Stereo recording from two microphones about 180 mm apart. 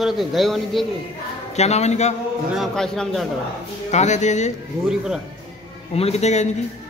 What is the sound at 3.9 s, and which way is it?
Speech, 40° left (ahead or behind).